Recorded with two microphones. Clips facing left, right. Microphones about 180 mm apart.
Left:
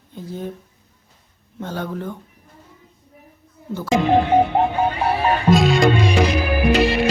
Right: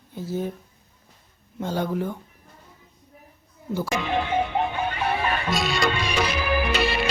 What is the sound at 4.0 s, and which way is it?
Music, 40° left (ahead or behind).